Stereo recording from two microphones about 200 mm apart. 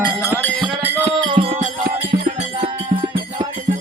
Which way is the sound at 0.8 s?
10° right (ahead or behind).